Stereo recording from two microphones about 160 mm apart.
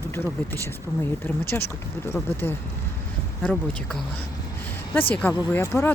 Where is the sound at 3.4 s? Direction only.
5° left (ahead or behind).